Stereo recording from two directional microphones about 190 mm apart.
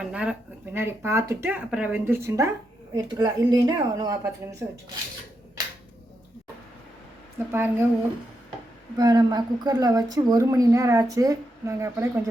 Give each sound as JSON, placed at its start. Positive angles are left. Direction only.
{"t": 0.0, "sound": "a woman's voice", "side_deg": -5}
{"t": 5.6, "sound": "finger snapping", "side_deg": -20}
{"t": 7.3, "sound": "speech", "side_deg": -10}
{"t": 9.0, "sound": "a woman's voice", "side_deg": -20}